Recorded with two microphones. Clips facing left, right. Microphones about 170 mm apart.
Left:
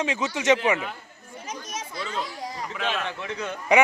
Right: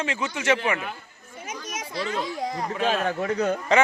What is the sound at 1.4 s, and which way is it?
Chatter, 10° right (ahead or behind).